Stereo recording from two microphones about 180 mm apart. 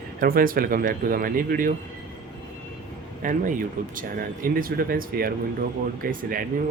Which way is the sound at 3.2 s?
45° right (ahead or behind).